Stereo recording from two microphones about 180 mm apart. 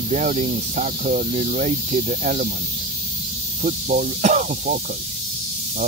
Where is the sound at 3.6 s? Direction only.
45° right (ahead or behind).